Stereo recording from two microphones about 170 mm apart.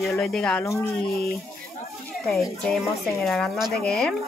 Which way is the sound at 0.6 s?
15° left (ahead or behind).